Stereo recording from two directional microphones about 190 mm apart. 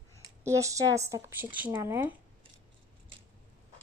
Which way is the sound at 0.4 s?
15° right (ahead or behind).